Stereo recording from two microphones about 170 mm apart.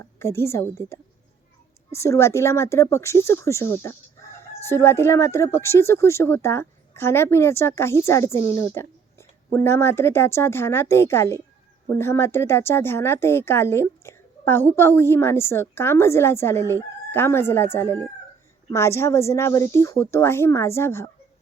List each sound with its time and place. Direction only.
0.0 s speech: 15° left (ahead or behind)